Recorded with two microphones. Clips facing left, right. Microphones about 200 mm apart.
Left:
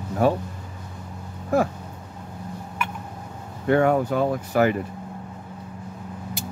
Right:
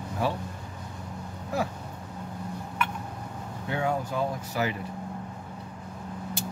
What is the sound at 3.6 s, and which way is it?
Speech, 60° left (ahead or behind).